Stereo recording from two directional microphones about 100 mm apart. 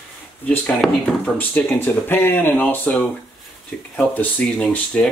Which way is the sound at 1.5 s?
20° left (ahead or behind).